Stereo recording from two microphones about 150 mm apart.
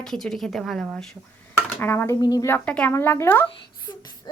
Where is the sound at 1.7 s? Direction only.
15° left (ahead or behind).